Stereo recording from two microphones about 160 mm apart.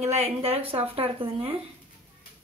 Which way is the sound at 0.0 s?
40° right (ahead or behind).